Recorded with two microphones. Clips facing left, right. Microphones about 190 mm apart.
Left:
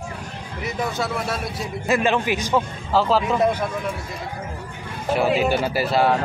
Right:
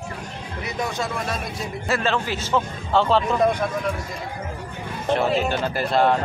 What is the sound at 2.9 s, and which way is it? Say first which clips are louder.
Speech: even; 5° left (ahead or behind).